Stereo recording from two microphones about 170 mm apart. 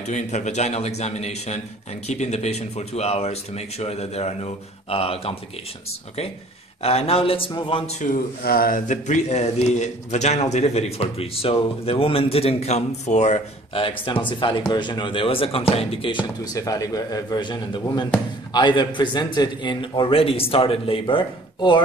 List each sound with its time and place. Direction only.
0.0 s speech: 45° left (ahead or behind)
6.8 s speech: 35° left (ahead or behind)
8.0 s speech: 55° left (ahead or behind); by 21.8 s 30° left (ahead or behind)